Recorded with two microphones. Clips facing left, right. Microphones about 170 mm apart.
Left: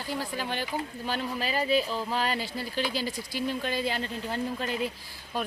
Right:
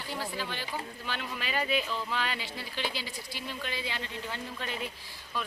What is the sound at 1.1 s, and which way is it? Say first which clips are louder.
Speech: left 5 dB; 35° left (ahead or behind).